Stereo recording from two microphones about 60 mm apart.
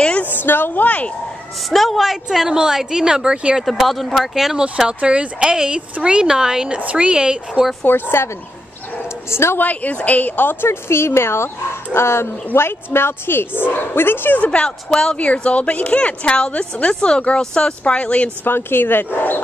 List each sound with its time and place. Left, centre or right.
0.0 s a sound: left
0.3 s speech: left
1.7 s speech: centre
3.6 s speech: centre
7.8 s speech: left
9.3 s speech: left
9.6 s a woman's voice: left
14.4 s a woman's voice: centre
18.4 s speech: left